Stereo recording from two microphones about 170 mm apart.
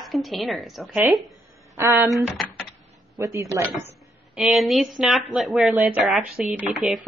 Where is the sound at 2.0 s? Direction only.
Centre (ahead or behind).